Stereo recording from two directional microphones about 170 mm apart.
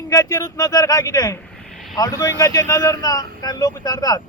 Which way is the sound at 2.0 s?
20° left (ahead or behind).